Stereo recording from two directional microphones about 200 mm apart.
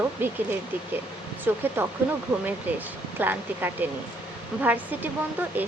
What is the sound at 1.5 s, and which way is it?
Speech, 10° right (ahead or behind).